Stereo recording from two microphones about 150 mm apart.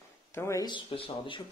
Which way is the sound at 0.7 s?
35° left (ahead or behind).